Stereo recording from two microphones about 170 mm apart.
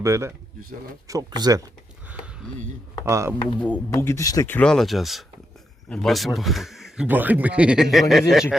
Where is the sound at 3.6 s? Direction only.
10° left (ahead or behind).